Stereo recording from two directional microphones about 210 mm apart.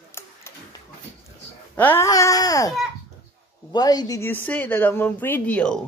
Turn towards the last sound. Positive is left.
turn(degrees=5)  # may be behind; listen again after turning